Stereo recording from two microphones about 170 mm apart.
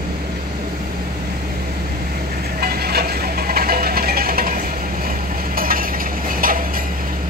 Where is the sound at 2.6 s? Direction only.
65° right (ahead or behind).